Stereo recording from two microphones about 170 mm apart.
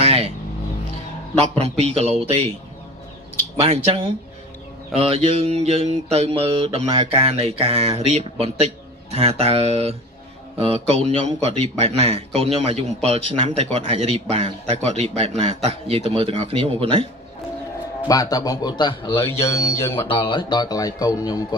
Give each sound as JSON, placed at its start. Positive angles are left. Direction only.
{"t": 0.0, "sound": "vehicle", "side_deg": -40}
{"t": 1.5, "sound": "mantra", "side_deg": -35}
{"t": 3.6, "sound": "mantra", "side_deg": -35}
{"t": 18.0, "sound": "speech", "side_deg": 20}
{"t": 20.1, "sound": "speech", "side_deg": 30}